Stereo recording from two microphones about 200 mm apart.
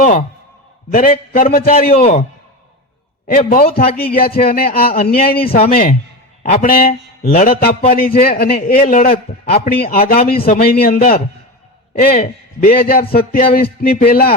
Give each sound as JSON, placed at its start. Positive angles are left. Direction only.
{"t": 0.0, "sound": "a man's voice", "side_deg": 45}
{"t": 3.2, "sound": "a man's voice", "side_deg": 45}
{"t": 12.5, "sound": "a man's voice", "side_deg": 45}